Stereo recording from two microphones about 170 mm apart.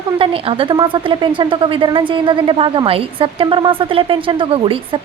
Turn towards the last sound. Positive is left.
turn(degrees=-30)  # may be behind; listen again after turning